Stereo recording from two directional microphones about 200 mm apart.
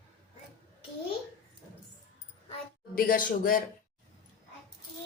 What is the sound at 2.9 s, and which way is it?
Speech, 45° left (ahead or behind).